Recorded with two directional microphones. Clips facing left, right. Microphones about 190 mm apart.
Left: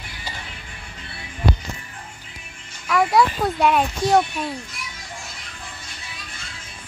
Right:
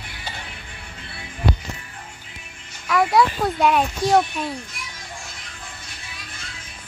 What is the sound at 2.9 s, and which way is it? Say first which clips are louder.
Speech: even; centre (ahead or behind).